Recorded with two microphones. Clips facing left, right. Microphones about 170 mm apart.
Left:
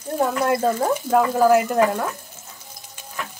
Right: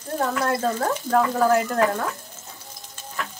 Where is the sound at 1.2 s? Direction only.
Centre (ahead or behind).